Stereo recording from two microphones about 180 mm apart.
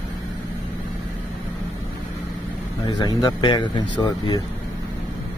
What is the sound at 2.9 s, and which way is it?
Speech, 25° left (ahead or behind).